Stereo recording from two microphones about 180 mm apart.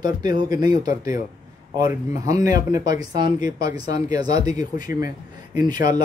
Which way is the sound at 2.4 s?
20° right (ahead or behind).